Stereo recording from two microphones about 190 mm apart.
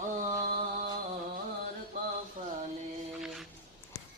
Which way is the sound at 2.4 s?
40° right (ahead or behind).